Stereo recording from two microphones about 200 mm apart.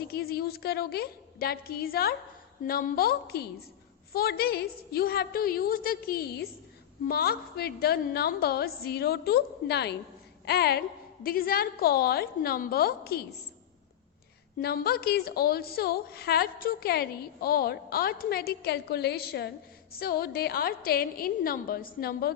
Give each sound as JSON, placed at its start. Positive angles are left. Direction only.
{"t": 0.1, "sound": "a woman's voice", "side_deg": 50}
{"t": 14.6, "sound": "a woman's voice", "side_deg": 50}